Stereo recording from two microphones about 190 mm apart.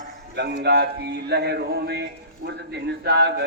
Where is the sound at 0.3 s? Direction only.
60° right (ahead or behind).